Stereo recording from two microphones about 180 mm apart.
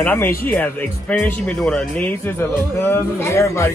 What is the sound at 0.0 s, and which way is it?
Speech, 10° left (ahead or behind).